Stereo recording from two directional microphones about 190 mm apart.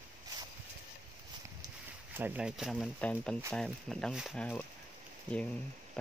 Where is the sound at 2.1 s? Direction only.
5° right (ahead or behind).